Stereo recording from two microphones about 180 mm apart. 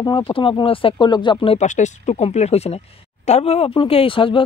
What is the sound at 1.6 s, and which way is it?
Speech, 40° left (ahead or behind).